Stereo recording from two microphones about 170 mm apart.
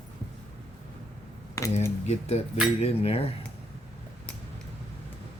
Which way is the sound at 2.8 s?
35° left (ahead or behind).